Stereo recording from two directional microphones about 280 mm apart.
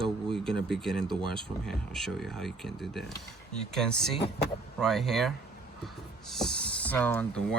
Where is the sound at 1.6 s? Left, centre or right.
Centre.